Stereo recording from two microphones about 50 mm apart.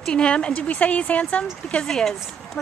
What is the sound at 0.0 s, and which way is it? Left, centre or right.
Speech, centre.